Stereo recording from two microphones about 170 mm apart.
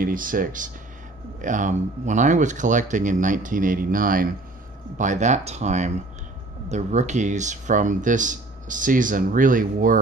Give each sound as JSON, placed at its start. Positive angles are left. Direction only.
{"t": 0.0, "sound": "speech", "side_deg": -55}